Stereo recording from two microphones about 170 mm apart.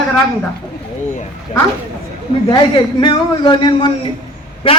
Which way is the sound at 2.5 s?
25° left (ahead or behind).